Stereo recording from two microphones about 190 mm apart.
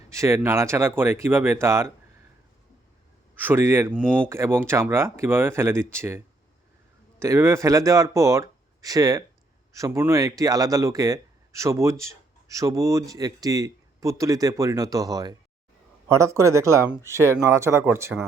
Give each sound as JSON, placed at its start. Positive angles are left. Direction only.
{"t": 0.1, "sound": "speech", "side_deg": -15}
{"t": 3.4, "sound": "speech", "side_deg": -15}